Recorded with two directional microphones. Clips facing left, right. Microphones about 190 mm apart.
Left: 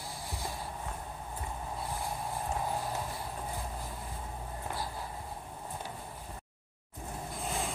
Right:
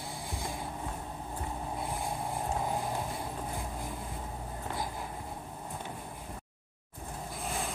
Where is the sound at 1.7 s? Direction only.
20° right (ahead or behind).